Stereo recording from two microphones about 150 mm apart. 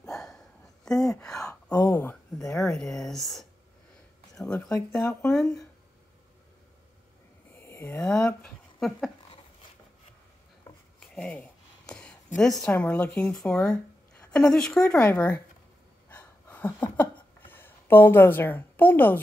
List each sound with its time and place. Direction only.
0.0 s a sound: 5° left (ahead or behind)
4.6 s speech: 20° left (ahead or behind)
5.3 s speech: 5° left (ahead or behind)
7.5 s snoring: 15° left (ahead or behind)
8.1 s speech: 5° left (ahead or behind)
11.0 s dishes: 5° left (ahead or behind)
12.4 s speech: 5° left (ahead or behind)
16.1 s a sound: 10° left (ahead or behind)